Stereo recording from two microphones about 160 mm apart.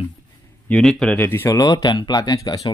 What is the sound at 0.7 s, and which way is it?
Speech, 5° left (ahead or behind).